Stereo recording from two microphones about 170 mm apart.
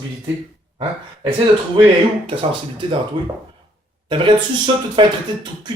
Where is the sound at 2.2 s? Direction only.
30° right (ahead or behind).